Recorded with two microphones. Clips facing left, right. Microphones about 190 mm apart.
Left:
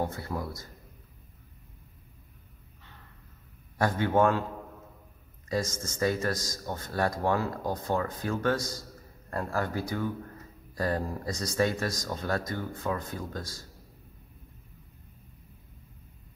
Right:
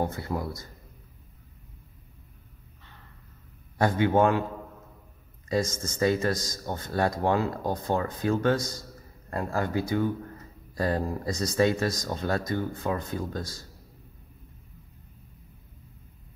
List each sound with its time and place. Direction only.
0.0 s speech: 25° right (ahead or behind)
3.7 s speech: 20° right (ahead or behind)
5.5 s speech: 20° right (ahead or behind)